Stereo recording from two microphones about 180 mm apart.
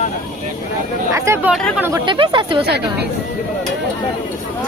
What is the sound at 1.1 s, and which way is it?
Speech, 15° right (ahead or behind).